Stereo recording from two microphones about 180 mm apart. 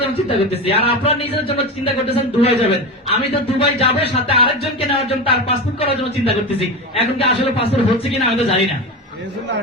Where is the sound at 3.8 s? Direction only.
70° left (ahead or behind).